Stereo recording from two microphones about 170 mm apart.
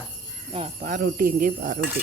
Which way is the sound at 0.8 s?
55° right (ahead or behind).